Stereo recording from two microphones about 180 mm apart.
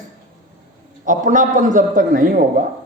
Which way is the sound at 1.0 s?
45° right (ahead or behind).